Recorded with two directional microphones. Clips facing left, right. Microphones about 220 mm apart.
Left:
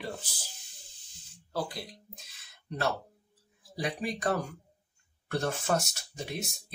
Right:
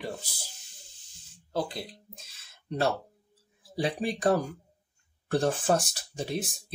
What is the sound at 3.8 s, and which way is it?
Speech, 30° right (ahead or behind).